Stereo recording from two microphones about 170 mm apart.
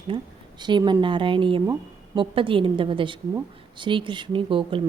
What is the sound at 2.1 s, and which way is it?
Mantra, 30° right (ahead or behind).